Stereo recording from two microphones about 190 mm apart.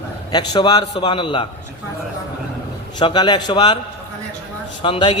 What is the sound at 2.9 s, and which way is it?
Speech, 25° left (ahead or behind).